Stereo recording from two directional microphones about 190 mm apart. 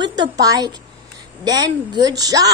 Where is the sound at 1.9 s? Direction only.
20° right (ahead or behind).